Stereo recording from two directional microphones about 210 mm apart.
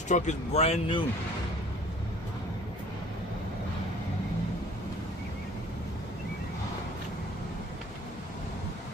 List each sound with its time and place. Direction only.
0.1 s speech: 35° left (ahead or behind)